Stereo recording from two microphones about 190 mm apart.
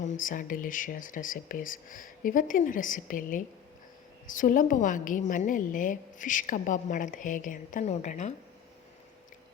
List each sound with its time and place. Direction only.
0.0 s a woman's voice: 40° left (ahead or behind)